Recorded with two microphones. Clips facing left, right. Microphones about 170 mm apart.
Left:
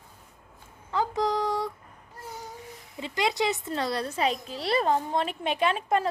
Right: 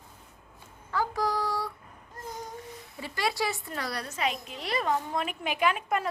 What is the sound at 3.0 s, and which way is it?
A child's voice, 20° left (ahead or behind).